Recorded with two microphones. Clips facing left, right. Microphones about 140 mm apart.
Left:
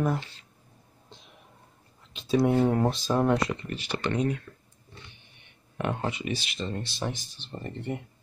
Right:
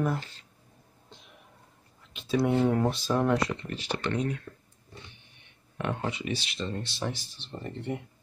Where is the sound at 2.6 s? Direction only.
25° left (ahead or behind).